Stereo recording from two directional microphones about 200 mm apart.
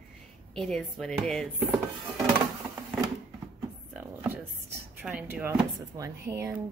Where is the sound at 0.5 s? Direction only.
Centre (ahead or behind).